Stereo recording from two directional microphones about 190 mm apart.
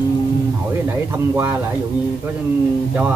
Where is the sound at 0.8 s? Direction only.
10° right (ahead or behind).